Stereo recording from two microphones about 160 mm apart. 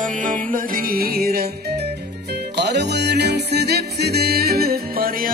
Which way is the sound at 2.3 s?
90° right.